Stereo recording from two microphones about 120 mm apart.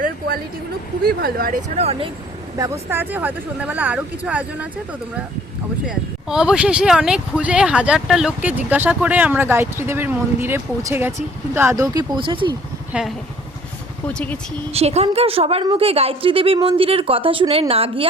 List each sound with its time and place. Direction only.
1.7 s a woman's voice: 60° right (ahead or behind)
2.6 s speech: 20° right (ahead or behind)
5.8 s speech: 5° right (ahead or behind)
11.9 s speech: 40° right (ahead or behind)
12.9 s speech: 5° right (ahead or behind)
14.1 s speech: 10° left (ahead or behind)
14.7 s a woman's voice: 60° right (ahead or behind)